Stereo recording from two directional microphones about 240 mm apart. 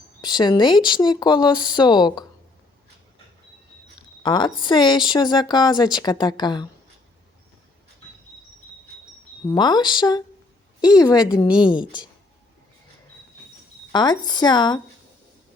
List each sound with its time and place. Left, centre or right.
0.2 s speech: centre
4.2 s speech: centre
9.5 s speech: centre
13.9 s speech: centre